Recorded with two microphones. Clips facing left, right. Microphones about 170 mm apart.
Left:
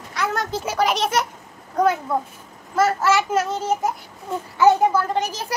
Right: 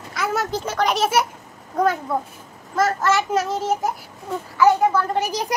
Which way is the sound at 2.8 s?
5° left (ahead or behind).